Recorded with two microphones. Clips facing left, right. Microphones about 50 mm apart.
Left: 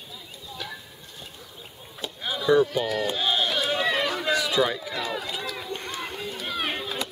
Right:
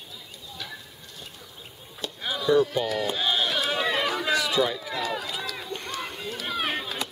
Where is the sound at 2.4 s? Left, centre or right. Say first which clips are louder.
Left 1 dB; centre.